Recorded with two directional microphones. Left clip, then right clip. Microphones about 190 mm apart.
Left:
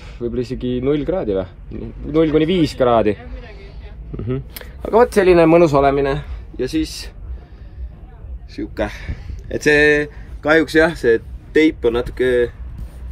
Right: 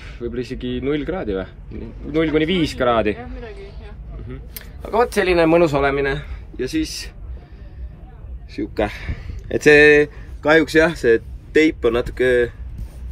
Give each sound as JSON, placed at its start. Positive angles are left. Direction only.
{"t": 0.0, "sound": "speech", "side_deg": 25}
{"t": 4.9, "sound": "speech", "side_deg": 45}
{"t": 5.3, "sound": "a man's voice", "side_deg": -50}
{"t": 5.7, "sound": "a man's voice", "side_deg": 25}
{"t": 8.5, "sound": "speech", "side_deg": -10}